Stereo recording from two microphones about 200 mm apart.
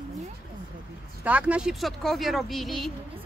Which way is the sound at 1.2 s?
5° right (ahead or behind).